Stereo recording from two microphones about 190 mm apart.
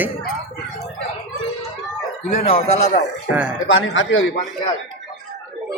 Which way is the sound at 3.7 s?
80° left.